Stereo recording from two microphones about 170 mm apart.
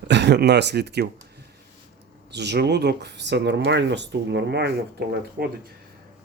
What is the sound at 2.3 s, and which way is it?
Speech, 85° right.